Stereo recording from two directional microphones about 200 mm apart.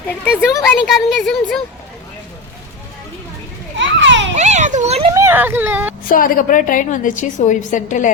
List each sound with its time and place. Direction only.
0.6 s speech: centre (ahead or behind)
3.8 s children playing: 65° right (ahead or behind)
4.4 s children playing: 35° right (ahead or behind)
5.1 s speech: 10° right (ahead or behind)
6.1 s a woman's voice: 45° left (ahead or behind)